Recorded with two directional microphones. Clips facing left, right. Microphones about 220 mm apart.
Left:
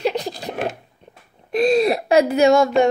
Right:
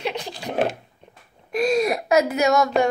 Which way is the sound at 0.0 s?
40° left (ahead or behind).